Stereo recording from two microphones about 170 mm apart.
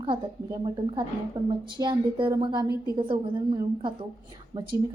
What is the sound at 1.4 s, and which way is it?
Speech, 25° right (ahead or behind).